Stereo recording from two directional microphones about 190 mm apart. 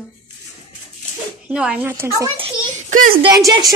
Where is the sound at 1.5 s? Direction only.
5° right (ahead or behind).